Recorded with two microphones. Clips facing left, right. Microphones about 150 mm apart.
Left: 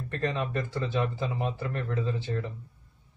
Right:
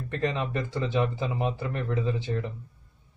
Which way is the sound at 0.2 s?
15° right (ahead or behind).